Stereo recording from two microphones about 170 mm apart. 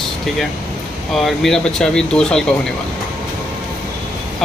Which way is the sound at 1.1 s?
Centre (ahead or behind).